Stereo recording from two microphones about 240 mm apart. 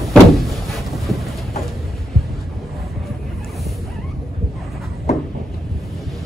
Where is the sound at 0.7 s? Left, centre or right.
Centre.